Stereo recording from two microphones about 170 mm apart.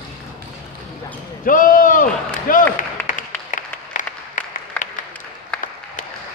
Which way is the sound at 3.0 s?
50° left (ahead or behind).